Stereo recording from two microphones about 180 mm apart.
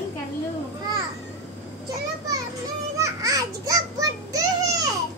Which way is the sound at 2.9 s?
15° right (ahead or behind).